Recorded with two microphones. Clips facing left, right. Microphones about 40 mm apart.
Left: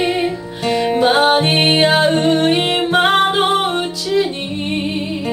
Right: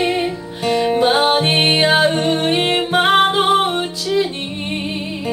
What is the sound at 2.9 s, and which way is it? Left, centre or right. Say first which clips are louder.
Music: even; centre.